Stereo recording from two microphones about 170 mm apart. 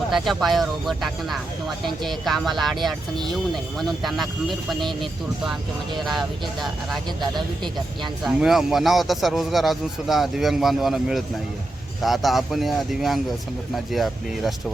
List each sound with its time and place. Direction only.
0.1 s a man's voice: centre (ahead or behind)